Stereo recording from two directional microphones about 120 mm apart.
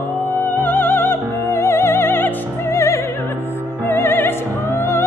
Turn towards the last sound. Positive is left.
turn(degrees=20)  # may be behind; listen again after turning